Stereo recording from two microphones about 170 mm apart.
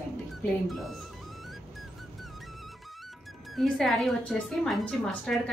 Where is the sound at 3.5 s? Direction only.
Centre (ahead or behind).